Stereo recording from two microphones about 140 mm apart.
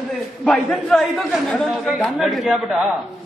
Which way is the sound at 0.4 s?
5° left (ahead or behind).